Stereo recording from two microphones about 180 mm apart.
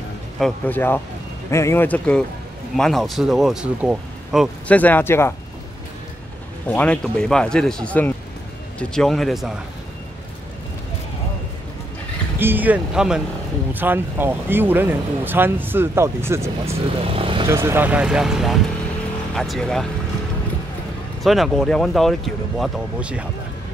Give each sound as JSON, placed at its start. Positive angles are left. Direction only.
{"t": 0.4, "sound": "speech", "side_deg": 10}
{"t": 4.7, "sound": "speech", "side_deg": 10}
{"t": 6.7, "sound": "speech", "side_deg": 5}
{"t": 12.4, "sound": "speech", "side_deg": -10}
{"t": 17.0, "sound": "speech", "side_deg": -30}
{"t": 17.5, "sound": "speech", "side_deg": -15}
{"t": 21.2, "sound": "speech", "side_deg": 0}